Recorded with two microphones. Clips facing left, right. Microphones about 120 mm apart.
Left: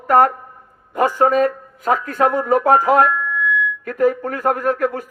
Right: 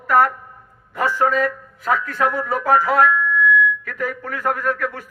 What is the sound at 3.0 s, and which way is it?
Music, 35° left (ahead or behind).